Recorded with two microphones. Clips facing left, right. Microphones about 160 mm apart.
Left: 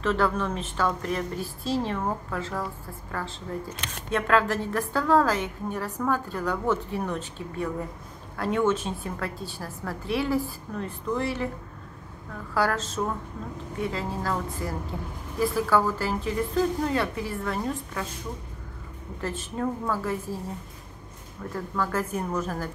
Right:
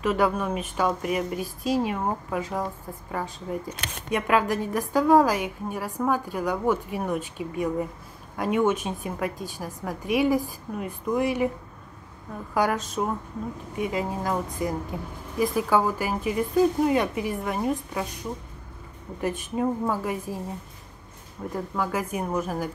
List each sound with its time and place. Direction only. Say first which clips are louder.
0.0 s a woman's voice: right 1 dB; 10° right (ahead or behind)
12.5 s a woman's voice: right 1 dB; 15° right (ahead or behind)
19.2 s a woman's voice: right 4 dB; 15° right (ahead or behind)
21.5 s a woman's voice: right 1 dB; 15° right (ahead or behind)